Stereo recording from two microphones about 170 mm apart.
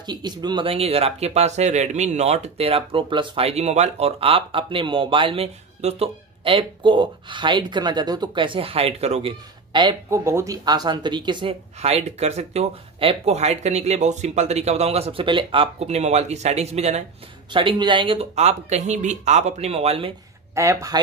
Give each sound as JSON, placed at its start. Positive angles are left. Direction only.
{"t": 0.0, "sound": "speech", "side_deg": -25}
{"t": 10.0, "sound": "speech", "side_deg": -15}
{"t": 17.5, "sound": "speech", "side_deg": -30}
{"t": 20.5, "sound": "speech", "side_deg": -15}